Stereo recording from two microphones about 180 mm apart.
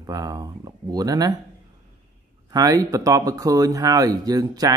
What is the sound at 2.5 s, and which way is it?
Speech, 20° right (ahead or behind).